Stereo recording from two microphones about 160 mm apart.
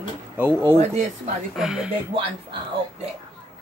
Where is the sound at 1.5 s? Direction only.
Centre (ahead or behind).